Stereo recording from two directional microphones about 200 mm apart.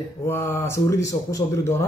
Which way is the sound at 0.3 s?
10° left (ahead or behind).